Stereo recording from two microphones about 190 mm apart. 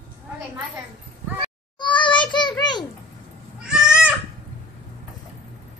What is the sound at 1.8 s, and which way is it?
Child singing, 25° left (ahead or behind).